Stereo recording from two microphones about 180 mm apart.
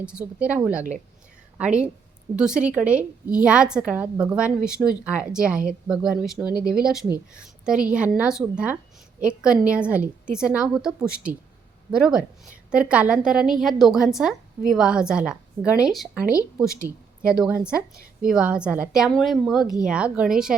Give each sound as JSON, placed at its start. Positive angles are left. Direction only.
{"t": 0.0, "sound": "a woman's voice", "side_deg": -5}
{"t": 16.6, "sound": "a woman's voice", "side_deg": 15}
{"t": 17.2, "sound": "a woman's voice", "side_deg": -5}